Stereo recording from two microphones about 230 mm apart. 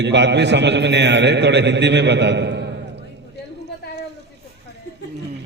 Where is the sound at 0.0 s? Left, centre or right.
Right.